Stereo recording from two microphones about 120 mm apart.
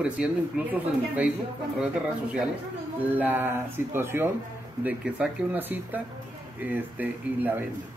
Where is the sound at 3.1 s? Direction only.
15° right (ahead or behind).